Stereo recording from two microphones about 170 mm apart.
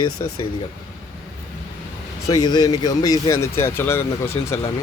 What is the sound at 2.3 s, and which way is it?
Speech, 25° left (ahead or behind).